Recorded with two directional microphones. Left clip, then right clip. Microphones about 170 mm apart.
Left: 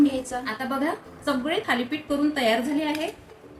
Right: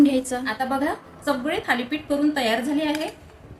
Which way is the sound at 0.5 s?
20° right (ahead or behind).